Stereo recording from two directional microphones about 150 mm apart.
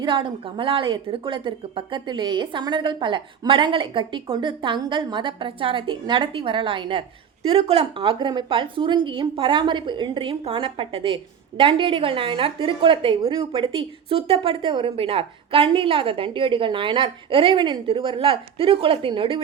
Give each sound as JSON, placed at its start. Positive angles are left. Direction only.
{"t": 0.0, "sound": "a woman's voice", "side_deg": -30}